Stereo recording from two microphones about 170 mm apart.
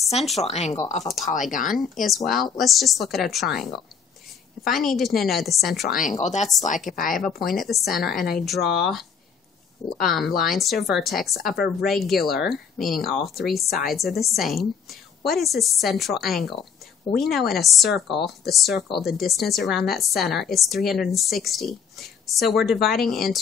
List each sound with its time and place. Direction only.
0.4 s speech: 40° left (ahead or behind)
1.0 s speech: centre (ahead or behind)
1.3 s speech: 50° left (ahead or behind)
2.0 s speech: centre (ahead or behind)
5.9 s speech: 45° left (ahead or behind)
7.2 s speech: centre (ahead or behind)